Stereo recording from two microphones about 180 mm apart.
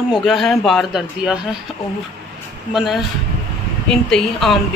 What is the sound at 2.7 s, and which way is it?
Speech, centre (ahead or behind).